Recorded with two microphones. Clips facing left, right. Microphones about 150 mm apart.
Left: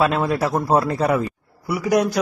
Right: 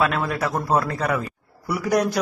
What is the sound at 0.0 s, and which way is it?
A man's voice, 25° left (ahead or behind).